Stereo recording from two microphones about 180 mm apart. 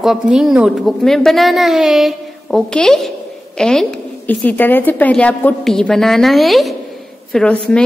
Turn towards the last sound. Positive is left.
turn(degrees=5)  # may be behind; listen again after turning